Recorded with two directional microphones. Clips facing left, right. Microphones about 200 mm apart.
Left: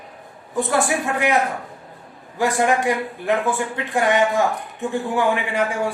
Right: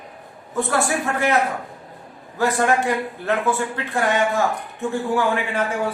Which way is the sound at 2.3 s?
15° left (ahead or behind).